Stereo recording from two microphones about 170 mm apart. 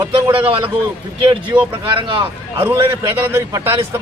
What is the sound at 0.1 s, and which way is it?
Speech, 35° right (ahead or behind).